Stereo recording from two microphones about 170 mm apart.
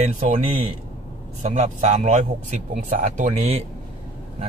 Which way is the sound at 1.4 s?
45° right (ahead or behind).